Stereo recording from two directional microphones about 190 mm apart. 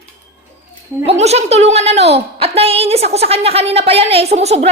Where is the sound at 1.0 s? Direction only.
35° right (ahead or behind).